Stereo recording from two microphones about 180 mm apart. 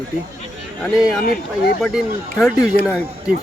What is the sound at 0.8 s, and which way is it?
Speech, centre (ahead or behind).